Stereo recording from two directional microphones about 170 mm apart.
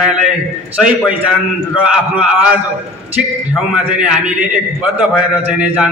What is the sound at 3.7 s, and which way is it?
A man's voice, 10° right (ahead or behind).